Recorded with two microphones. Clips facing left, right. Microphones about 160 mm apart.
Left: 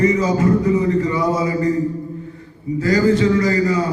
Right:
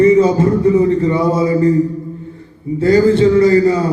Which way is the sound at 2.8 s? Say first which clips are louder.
Right 5 dB; 30° right (ahead or behind).